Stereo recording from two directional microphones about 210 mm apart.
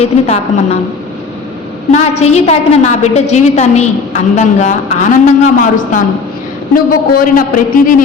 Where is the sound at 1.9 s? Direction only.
30° left (ahead or behind).